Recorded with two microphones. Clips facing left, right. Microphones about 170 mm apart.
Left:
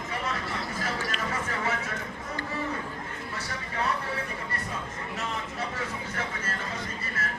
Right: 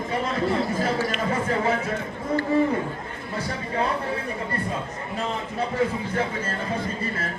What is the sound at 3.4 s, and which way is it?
Speech, 30° right (ahead or behind).